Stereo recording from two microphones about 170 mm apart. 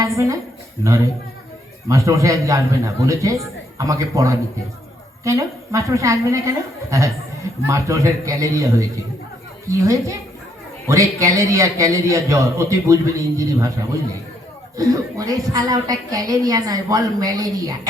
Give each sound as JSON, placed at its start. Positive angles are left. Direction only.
{"t": 0.0, "sound": "a woman's voice", "side_deg": -20}
{"t": 1.9, "sound": "a woman's voice", "side_deg": -20}
{"t": 14.8, "sound": "a woman's voice", "side_deg": -20}